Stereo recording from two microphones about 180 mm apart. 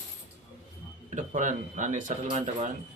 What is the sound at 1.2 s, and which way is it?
Speech, 45° right (ahead or behind).